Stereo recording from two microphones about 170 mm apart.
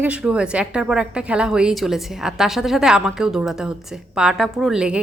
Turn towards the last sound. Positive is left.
turn(degrees=-5)  # may be behind; listen again after turning